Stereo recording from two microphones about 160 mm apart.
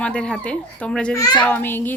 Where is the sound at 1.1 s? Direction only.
25° left (ahead or behind).